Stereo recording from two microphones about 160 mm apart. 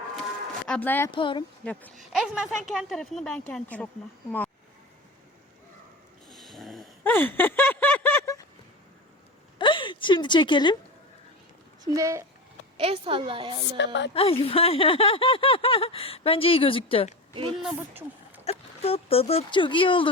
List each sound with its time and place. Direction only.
0.7 s a woman's voice: 10° left (ahead or behind)
1.1 s speech: 30° left (ahead or behind)
1.6 s a woman's voice: 5° left (ahead or behind)
2.1 s a woman's voice: 5° right (ahead or behind)
6.2 s snoring: centre (ahead or behind)
7.0 s a sound: 10° left (ahead or behind)
9.6 s a sound: 30° left (ahead or behind)
11.9 s speech: 20° right (ahead or behind)
12.7 s a woman's voice: 35° right (ahead or behind)
13.7 s speech: 90° left
14.1 s speech: 35° left (ahead or behind)
17.6 s speech: 5° right (ahead or behind)
18.8 s speech: 35° left (ahead or behind)